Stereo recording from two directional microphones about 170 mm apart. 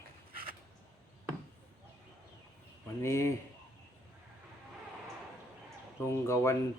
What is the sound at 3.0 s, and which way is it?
Speech, 15° left (ahead or behind).